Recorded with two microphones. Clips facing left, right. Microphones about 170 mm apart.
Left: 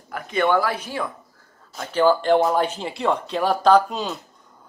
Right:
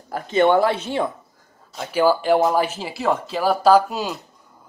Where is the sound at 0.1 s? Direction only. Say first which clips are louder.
Right 4 dB; 25° right (ahead or behind).